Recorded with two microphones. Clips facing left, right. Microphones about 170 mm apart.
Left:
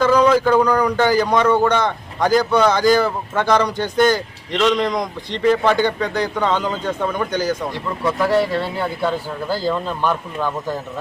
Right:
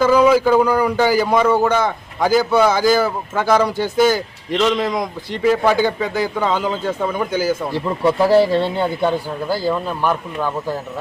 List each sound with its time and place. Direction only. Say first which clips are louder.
0.0 s speech: right 1 dB; 5° right (ahead or behind)
7.7 s a man's voice: right 5 dB; 30° right (ahead or behind); by 10.8 s 10° right (ahead or behind)